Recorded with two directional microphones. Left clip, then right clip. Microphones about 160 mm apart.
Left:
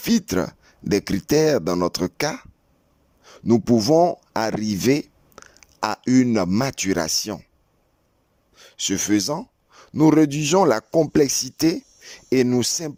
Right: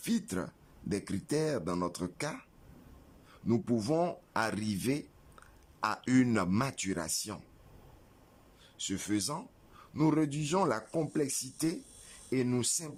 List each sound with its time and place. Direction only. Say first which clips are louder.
0.0 s speech: left 14 dB; 55° left (ahead or behind)
8.5 s gasp: left 14 dB; 55° left (ahead or behind)
10.0 s speech: left 14 dB; 60° left (ahead or behind)
11.1 s speech: left 15 dB; 60° left (ahead or behind)